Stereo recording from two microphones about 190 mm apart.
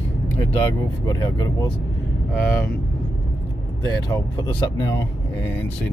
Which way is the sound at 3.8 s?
20° left (ahead or behind).